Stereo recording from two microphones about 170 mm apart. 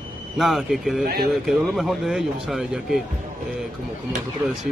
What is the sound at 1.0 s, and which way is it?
Speech, 65° right (ahead or behind).